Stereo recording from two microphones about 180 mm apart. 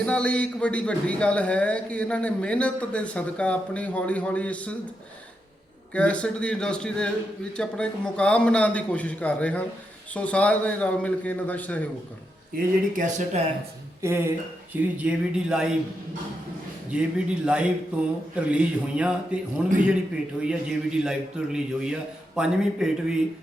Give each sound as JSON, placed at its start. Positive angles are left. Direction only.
{"t": 0.0, "sound": "a man's voice", "side_deg": 5}
{"t": 5.9, "sound": "a man's voice", "side_deg": 5}
{"t": 12.5, "sound": "speech", "side_deg": -55}
{"t": 13.0, "sound": "speech", "side_deg": -40}
{"t": 14.0, "sound": "speech", "side_deg": -15}
{"t": 16.9, "sound": "a man's voice", "side_deg": -5}